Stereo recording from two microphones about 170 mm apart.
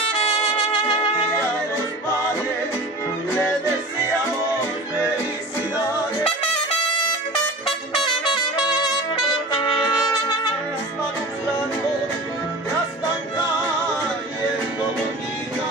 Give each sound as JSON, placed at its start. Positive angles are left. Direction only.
{"t": 8.2, "sound": "trumpet", "side_deg": 30}